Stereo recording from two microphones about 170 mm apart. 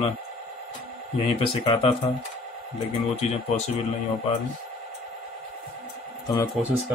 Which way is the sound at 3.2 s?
40° left (ahead or behind).